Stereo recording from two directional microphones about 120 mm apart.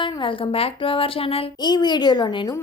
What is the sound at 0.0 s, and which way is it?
A woman's voice, 45° left (ahead or behind).